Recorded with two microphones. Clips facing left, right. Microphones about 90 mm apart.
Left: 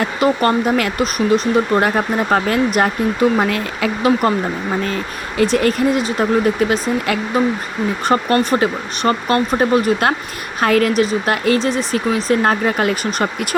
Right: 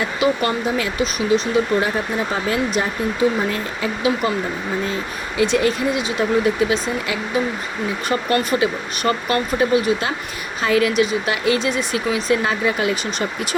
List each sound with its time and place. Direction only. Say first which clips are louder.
0.0 s speech: left 4 dB; 50° left (ahead or behind); by 3.9 s 70° left (ahead or behind)
4.0 s speech: left 5 dB; 50° left (ahead or behind)
5.4 s speech: left 3 dB; 50° left (ahead or behind)
8.0 s speech: left 5 dB; 35° left (ahead or behind)